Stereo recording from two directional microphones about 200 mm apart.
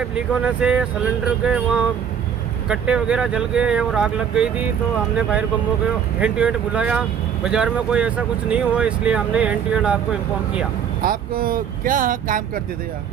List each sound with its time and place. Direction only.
0.0 s speech: 5° right (ahead or behind)
11.0 s speech: 45° right (ahead or behind)